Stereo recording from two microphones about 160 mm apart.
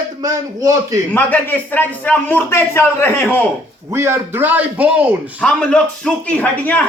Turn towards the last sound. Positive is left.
turn(degrees=10)  # may be behind; listen again after turning